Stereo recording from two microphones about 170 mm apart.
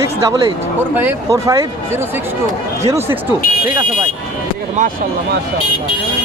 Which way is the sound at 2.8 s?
15° right (ahead or behind).